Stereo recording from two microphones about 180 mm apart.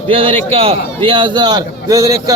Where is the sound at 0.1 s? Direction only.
30° right (ahead or behind).